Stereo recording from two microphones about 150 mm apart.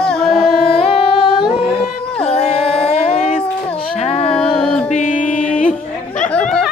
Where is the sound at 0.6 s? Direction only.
40° left (ahead or behind).